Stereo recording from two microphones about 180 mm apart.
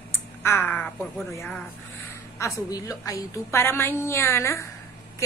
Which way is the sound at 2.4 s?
20° left (ahead or behind).